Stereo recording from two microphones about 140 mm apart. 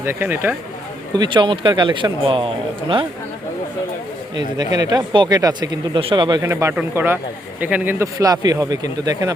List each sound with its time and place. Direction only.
0.0 s speech: 15° right (ahead or behind)
1.1 s speech: 30° right (ahead or behind)
4.4 s speech: 30° right (ahead or behind)
6.4 s a man's voice: 20° right (ahead or behind)